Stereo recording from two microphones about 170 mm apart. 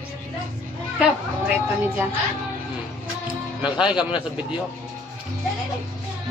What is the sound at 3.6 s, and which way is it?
Speech, 5° right (ahead or behind).